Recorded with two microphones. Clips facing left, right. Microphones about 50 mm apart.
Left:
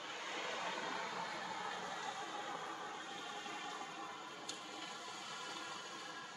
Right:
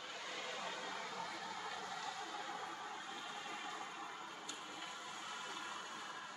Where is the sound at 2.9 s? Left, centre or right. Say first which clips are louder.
Even; centre.